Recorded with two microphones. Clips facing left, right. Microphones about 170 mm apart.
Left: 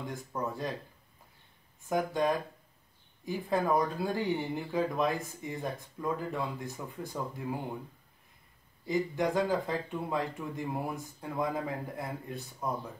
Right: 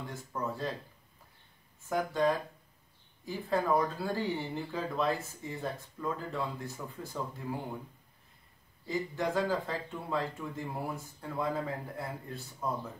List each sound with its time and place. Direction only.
0.1 s speech: 15° left (ahead or behind)
1.9 s speech: 15° left (ahead or behind)
8.8 s speech: 15° left (ahead or behind)